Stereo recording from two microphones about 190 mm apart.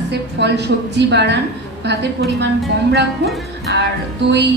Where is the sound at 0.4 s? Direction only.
65° right (ahead or behind).